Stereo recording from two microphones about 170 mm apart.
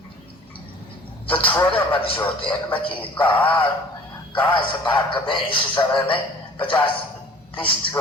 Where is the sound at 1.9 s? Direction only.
35° left (ahead or behind).